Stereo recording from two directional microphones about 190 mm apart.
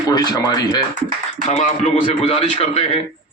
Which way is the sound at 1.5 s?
35° left (ahead or behind).